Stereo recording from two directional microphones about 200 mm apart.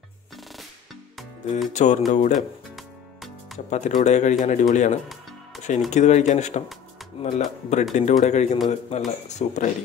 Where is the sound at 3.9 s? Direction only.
35° left (ahead or behind).